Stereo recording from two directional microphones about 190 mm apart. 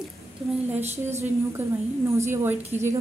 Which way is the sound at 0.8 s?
35° right (ahead or behind).